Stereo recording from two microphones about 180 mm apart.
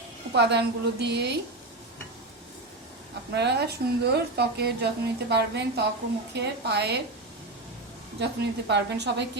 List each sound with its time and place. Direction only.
0.3 s a woman's voice: 70° right (ahead or behind)
3.3 s a woman's voice: 70° right (ahead or behind)
8.2 s a woman's voice: 70° right (ahead or behind)